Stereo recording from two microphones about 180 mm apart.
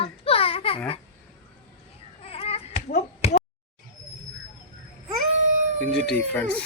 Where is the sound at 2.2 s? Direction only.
35° left (ahead or behind).